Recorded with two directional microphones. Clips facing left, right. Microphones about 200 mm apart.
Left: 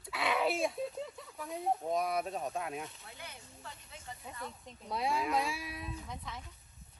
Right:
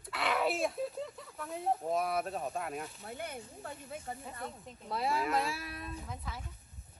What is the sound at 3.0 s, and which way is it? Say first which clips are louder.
Speech: right 9 dB; 55° right (ahead or behind).